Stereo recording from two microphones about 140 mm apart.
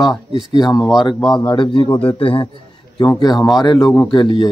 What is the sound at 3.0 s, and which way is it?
Speech, 25° left (ahead or behind).